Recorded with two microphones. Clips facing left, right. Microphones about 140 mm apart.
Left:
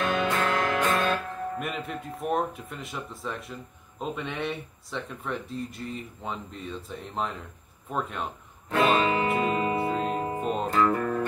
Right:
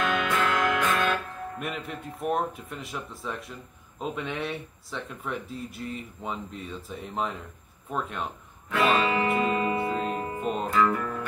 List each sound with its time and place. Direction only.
0.1 s music: 40° left (ahead or behind)
1.6 s speech: centre (ahead or behind)
8.6 s music: 45° left (ahead or behind)